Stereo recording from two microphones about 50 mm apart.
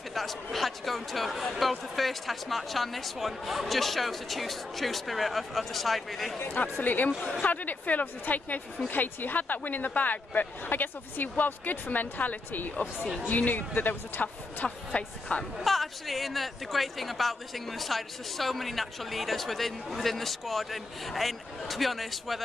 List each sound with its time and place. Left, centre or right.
0.1 s speech: centre
6.6 s speech: left
14.9 s speech: left
15.6 s speech: centre